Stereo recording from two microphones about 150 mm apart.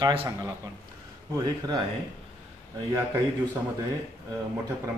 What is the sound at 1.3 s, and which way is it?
Speech, 25° right (ahead or behind).